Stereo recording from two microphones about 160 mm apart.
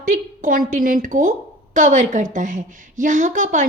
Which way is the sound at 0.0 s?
55° right (ahead or behind).